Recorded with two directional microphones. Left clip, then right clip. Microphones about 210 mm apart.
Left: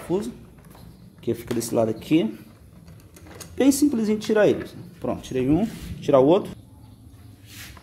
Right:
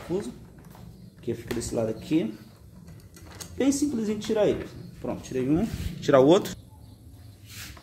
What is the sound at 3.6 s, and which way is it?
Speech, 45° left (ahead or behind).